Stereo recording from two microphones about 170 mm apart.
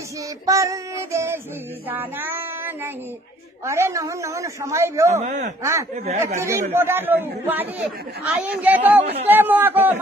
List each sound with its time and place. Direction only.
0.5 s a woman's voice: 20° right (ahead or behind)
1.9 s child singing: 10° right (ahead or behind)
3.6 s a woman's voice: 15° right (ahead or behind)
5.2 s speech: 45° right (ahead or behind)
5.6 s a woman's voice: 15° right (ahead or behind)